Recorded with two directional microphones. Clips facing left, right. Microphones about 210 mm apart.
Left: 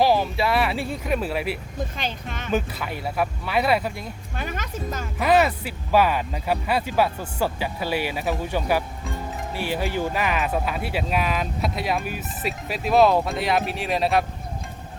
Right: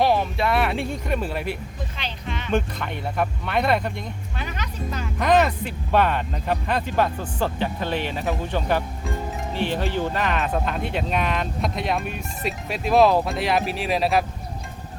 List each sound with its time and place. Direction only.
0.0 s speech: centre (ahead or behind)
2.0 s speech: 45° left (ahead or behind)
2.5 s speech: 5° left (ahead or behind)
4.4 s speech: 45° left (ahead or behind)
5.2 s speech: 5° left (ahead or behind)